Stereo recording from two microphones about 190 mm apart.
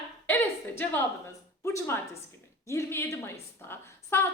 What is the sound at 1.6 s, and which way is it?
A woman's voice, 15° left (ahead or behind).